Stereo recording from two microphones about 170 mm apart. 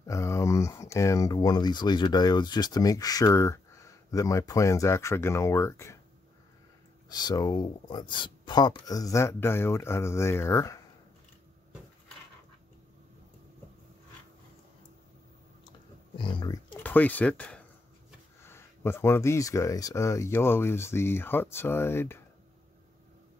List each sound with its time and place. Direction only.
0.0 s speech: 20° left (ahead or behind)
7.1 s speech: 25° left (ahead or behind)
16.2 s speech: 30° left (ahead or behind)
16.7 s speech: 10° left (ahead or behind)